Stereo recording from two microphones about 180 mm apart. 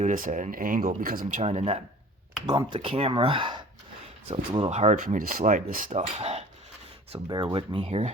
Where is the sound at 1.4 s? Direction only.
35° right (ahead or behind).